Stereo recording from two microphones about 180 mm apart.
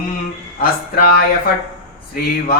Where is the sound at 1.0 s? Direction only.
55° left (ahead or behind).